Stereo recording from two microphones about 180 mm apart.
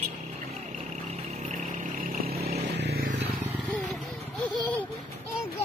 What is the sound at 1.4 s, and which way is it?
Vehicle, 45° right (ahead or behind).